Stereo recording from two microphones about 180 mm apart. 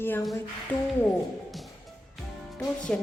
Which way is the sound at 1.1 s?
Centre (ahead or behind).